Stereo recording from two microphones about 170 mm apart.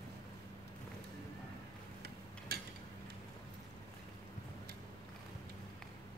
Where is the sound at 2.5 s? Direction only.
65° right (ahead or behind).